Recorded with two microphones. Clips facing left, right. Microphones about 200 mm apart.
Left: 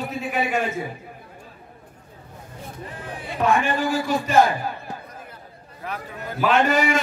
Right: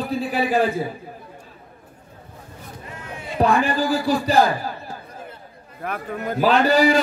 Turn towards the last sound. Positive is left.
turn(degrees=-35)  # may be behind; listen again after turning